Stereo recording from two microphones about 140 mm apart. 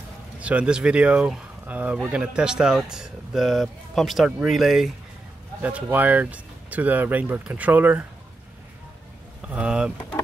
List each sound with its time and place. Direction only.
0.4 s speech: 10° right (ahead or behind)
9.5 s speech: 10° right (ahead or behind)